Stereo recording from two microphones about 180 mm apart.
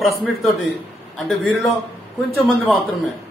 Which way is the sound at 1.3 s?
Centre (ahead or behind).